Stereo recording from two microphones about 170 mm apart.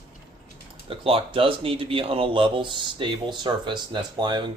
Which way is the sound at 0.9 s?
35° right (ahead or behind).